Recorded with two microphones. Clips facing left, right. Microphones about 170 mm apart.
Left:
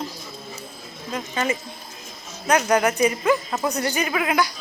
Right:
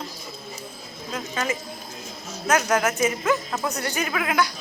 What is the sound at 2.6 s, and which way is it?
A man's voice, 10° left (ahead or behind).